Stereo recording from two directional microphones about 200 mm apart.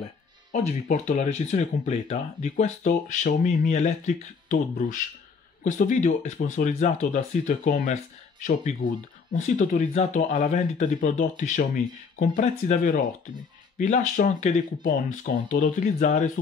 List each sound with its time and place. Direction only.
0.5 s speech: 40° left (ahead or behind)